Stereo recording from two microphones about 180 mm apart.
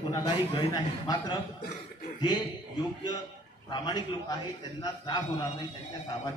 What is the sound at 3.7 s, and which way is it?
A man's voice, 25° left (ahead or behind).